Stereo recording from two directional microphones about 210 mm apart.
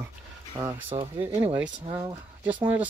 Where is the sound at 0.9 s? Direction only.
25° right (ahead or behind).